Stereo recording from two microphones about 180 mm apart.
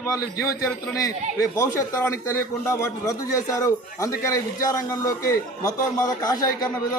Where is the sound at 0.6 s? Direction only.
20° left (ahead or behind).